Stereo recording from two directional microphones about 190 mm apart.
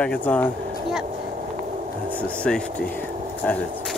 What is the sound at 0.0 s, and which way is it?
Speech, 5° left (ahead or behind).